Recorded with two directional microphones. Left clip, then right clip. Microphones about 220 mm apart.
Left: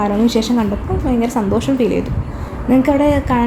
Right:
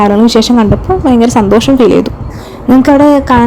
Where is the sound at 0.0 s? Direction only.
40° right (ahead or behind).